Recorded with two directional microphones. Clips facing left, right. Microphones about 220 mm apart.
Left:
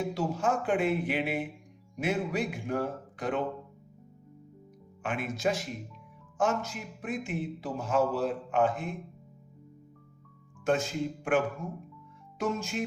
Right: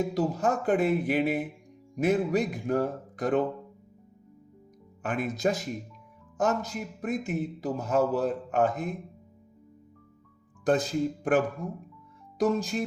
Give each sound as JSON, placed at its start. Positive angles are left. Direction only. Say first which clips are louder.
{"t": 0.1, "sound": "a man's voice", "louder": "right 3 dB", "side_deg": -40}
{"t": 5.0, "sound": "a man's voice", "louder": "right 3 dB", "side_deg": -40}
{"t": 10.6, "sound": "a man's voice", "louder": "right 3 dB", "side_deg": -35}